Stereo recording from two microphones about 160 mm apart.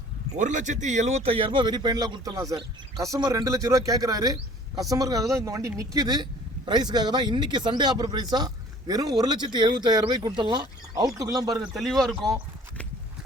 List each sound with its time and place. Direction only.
0.3 s a man's voice: 50° right (ahead or behind); by 11.5 s 25° right (ahead or behind)
11.7 s a man's voice: centre (ahead or behind)